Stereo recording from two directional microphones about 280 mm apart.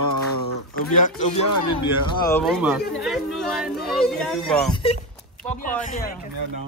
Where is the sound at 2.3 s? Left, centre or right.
Centre.